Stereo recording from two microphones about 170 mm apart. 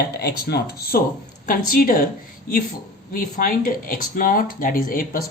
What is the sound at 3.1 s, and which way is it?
Speech, 55° left (ahead or behind).